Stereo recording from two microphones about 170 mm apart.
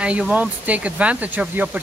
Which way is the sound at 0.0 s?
5° right (ahead or behind).